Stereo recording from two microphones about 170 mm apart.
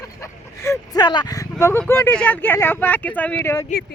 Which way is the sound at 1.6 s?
15° left (ahead or behind).